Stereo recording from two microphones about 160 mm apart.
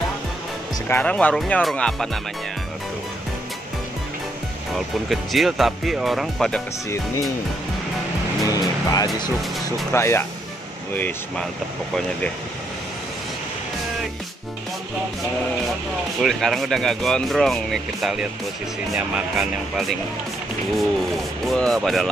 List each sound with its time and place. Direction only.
0.8 s speech: 10° left (ahead or behind)
4.7 s speech: centre (ahead or behind)
8.5 s speech: 25° left (ahead or behind)
16.2 s speech: centre (ahead or behind)
21.5 s speech: 5° left (ahead or behind)